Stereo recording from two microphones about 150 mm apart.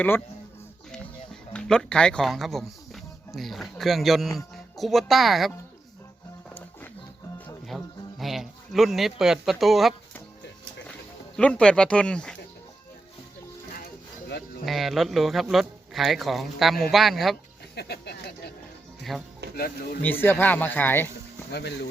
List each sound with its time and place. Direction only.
0.9 s speech: 5° left (ahead or behind)
7.7 s music: centre (ahead or behind)
8.2 s speech: centre (ahead or behind)
11.3 s speech: 5° left (ahead or behind)
14.6 s speech: centre (ahead or behind)
17.7 s a sound: 90° left
19.1 s speech: centre (ahead or behind)
19.5 s speech: 85° left
20.0 s speech: 15° left (ahead or behind)